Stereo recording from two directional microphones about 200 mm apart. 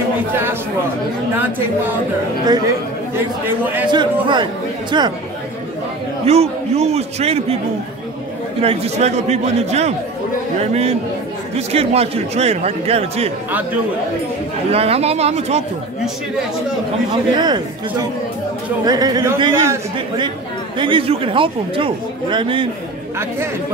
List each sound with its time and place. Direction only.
3.9 s speech: 20° right (ahead or behind)
6.2 s a man's voice: 30° right (ahead or behind)
8.5 s a man's voice: 30° right (ahead or behind)
14.7 s a man's voice: 30° right (ahead or behind)
17.3 s speech: 20° right (ahead or behind)